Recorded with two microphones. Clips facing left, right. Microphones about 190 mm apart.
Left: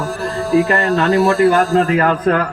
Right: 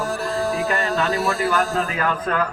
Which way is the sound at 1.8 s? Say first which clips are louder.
Left 9 dB; 70° left (ahead or behind).